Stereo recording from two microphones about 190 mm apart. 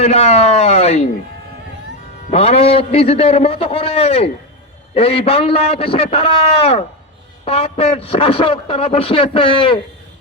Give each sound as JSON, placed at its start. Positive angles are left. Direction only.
{"t": 0.0, "sound": "a man's voice", "side_deg": 35}
{"t": 2.3, "sound": "a man's voice", "side_deg": 30}